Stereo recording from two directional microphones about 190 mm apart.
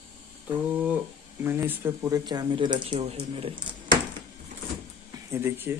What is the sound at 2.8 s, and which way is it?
Speech, 35° right (ahead or behind).